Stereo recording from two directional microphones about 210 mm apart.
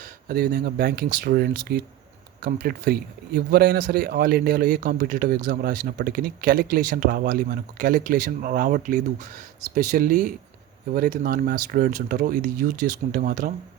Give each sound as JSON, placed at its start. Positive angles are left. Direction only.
{"t": 0.0, "sound": "a man's voice", "side_deg": -45}